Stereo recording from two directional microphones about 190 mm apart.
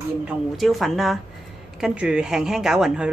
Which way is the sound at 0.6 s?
Centre (ahead or behind).